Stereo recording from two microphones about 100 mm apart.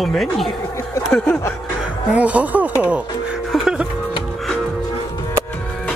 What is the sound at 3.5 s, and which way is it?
Music, 5° right (ahead or behind).